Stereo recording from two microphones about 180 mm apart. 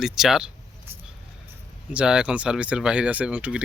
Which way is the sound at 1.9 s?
5° right (ahead or behind).